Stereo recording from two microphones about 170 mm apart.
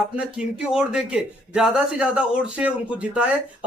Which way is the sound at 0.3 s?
5° right (ahead or behind).